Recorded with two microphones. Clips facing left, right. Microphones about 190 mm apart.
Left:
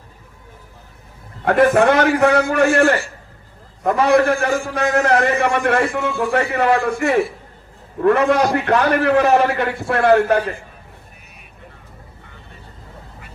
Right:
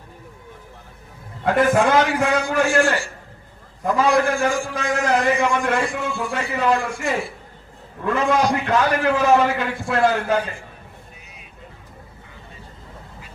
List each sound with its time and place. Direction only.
1.5 s a man's voice: 65° left (ahead or behind)